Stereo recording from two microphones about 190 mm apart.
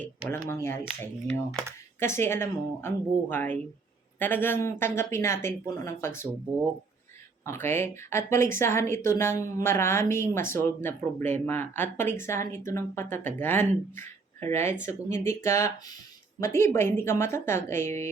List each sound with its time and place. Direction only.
0.5 s speech: 15° left (ahead or behind)
2.0 s speech: 15° left (ahead or behind)
7.4 s speech: 15° left (ahead or behind)